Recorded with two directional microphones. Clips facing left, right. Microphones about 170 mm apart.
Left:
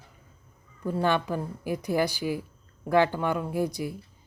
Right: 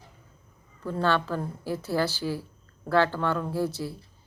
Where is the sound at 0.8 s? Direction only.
15° left (ahead or behind).